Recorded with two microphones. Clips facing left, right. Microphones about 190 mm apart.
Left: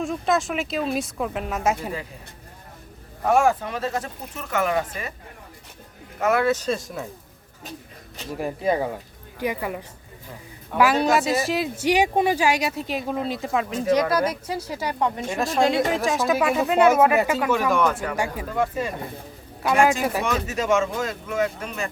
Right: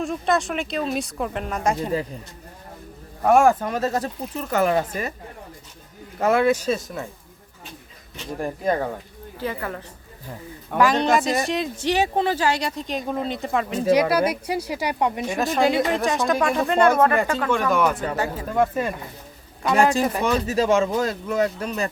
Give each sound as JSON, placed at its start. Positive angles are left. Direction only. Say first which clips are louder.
{"t": 0.0, "sound": "speech", "louder": "right 1 dB", "side_deg": 0}
{"t": 3.2, "sound": "speech", "louder": "right 3 dB", "side_deg": -50}
{"t": 6.1, "sound": "speech", "louder": "right 2 dB", "side_deg": -30}
{"t": 6.4, "sound": "speech", "louder": "right 2 dB", "side_deg": -10}
{"t": 8.4, "sound": "speech", "louder": "even", "side_deg": 5}
{"t": 13.9, "sound": "speech", "louder": "right 2 dB", "side_deg": -10}
{"t": 15.4, "sound": "speech", "louder": "even", "side_deg": 0}
{"t": 18.5, "sound": "speech", "louder": "right 4 dB", "side_deg": -50}
{"t": 19.6, "sound": "speech", "louder": "right 1 dB", "side_deg": 5}
{"t": 20.2, "sound": "speech", "louder": "right 4 dB", "side_deg": -35}